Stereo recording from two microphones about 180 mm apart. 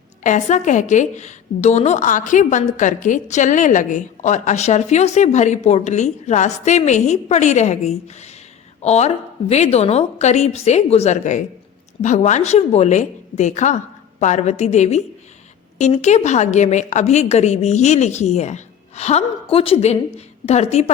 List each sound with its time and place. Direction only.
0.2 s a woman's voice: 45° left (ahead or behind)